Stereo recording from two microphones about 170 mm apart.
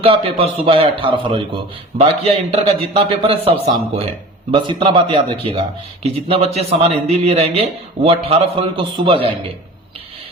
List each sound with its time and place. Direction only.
0.0 s speech: 35° right (ahead or behind)